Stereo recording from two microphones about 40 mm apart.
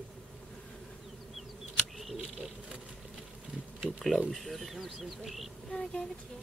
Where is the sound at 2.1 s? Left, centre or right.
Centre.